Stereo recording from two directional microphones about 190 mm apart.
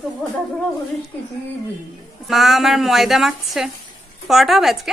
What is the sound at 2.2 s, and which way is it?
A woman's voice, centre (ahead or behind).